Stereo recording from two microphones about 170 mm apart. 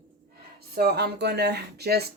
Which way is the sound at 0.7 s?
70° right (ahead or behind).